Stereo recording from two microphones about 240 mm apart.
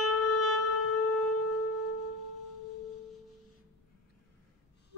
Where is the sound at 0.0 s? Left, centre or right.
Left.